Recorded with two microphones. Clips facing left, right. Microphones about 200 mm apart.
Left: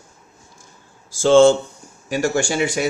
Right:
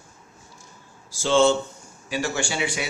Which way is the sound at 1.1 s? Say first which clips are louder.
Left 7 dB; 50° left (ahead or behind).